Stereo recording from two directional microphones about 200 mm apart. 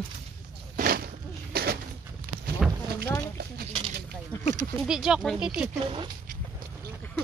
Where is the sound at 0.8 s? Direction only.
50° right (ahead or behind).